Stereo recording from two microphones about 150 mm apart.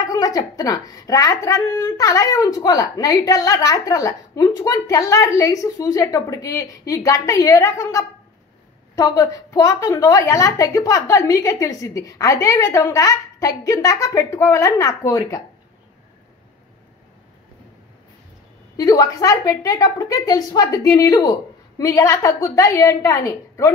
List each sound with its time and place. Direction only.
0.0 s speech: 25° left (ahead or behind)
18.8 s speech: 25° left (ahead or behind)